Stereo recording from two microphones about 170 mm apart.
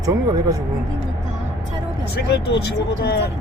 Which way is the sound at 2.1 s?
75° left (ahead or behind).